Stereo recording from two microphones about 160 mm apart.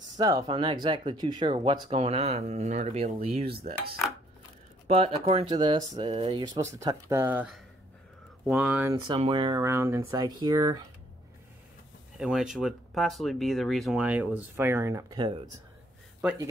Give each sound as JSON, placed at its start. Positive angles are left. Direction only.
{"t": 0.2, "sound": "speech", "side_deg": -25}
{"t": 4.8, "sound": "speech", "side_deg": -40}
{"t": 6.4, "sound": "speech", "side_deg": -20}
{"t": 9.0, "sound": "speech", "side_deg": -30}
{"t": 12.2, "sound": "speech", "side_deg": -5}